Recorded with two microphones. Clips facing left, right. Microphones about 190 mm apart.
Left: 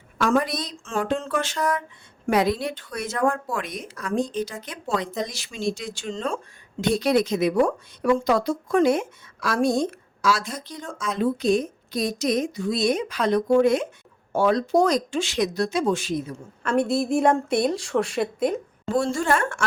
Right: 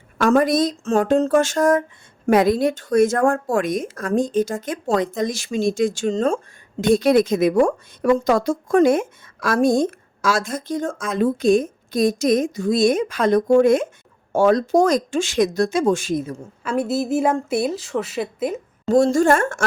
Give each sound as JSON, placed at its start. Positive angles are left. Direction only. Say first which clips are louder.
{"t": 0.2, "sound": "speech", "louder": "right 6 dB", "side_deg": -50}
{"t": 16.6, "sound": "a woman's voice", "louder": "right 1 dB", "side_deg": -5}
{"t": 18.9, "sound": "speech", "louder": "right 7 dB", "side_deg": -40}